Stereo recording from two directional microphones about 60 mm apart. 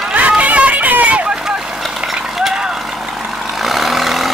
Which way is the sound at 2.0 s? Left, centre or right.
Centre.